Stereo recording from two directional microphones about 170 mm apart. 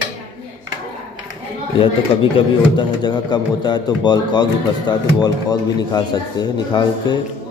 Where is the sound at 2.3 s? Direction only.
25° left (ahead or behind).